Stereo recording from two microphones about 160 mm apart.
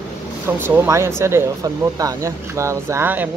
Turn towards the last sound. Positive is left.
turn(degrees=-10)  # may be behind; listen again after turning